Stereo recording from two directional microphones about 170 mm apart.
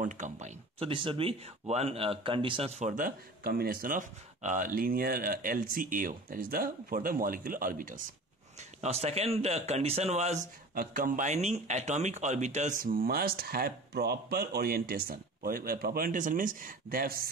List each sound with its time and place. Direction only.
0.0 s speech: 45° right (ahead or behind)
8.5 s speech: 40° right (ahead or behind)
10.7 s speech: 55° right (ahead or behind)